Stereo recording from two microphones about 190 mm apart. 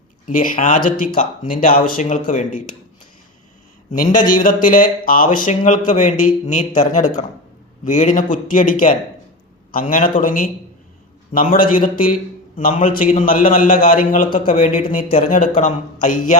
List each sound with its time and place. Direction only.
0.3 s a man's voice: 45° left (ahead or behind)
4.4 s a man's voice: 45° left (ahead or behind)